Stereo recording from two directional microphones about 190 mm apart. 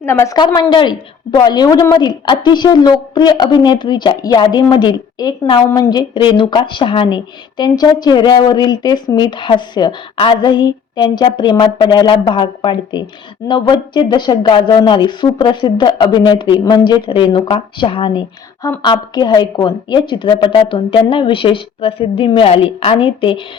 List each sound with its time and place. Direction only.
0.0 s a woman's voice: 15° left (ahead or behind)